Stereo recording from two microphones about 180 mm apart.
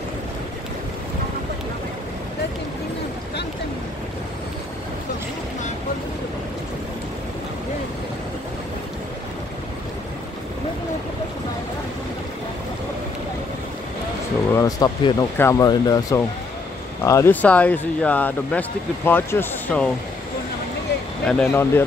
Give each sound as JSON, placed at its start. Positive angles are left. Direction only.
{"t": 14.5, "sound": "speech", "side_deg": 20}
{"t": 21.3, "sound": "speech", "side_deg": 10}